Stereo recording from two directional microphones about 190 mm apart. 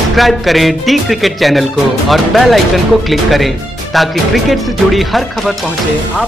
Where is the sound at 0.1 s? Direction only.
Centre (ahead or behind).